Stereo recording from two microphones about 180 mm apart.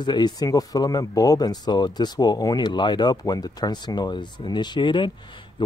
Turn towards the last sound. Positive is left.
turn(degrees=25)  # may be behind; listen again after turning